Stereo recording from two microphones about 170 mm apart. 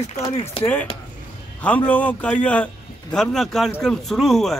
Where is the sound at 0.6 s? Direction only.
30° left (ahead or behind).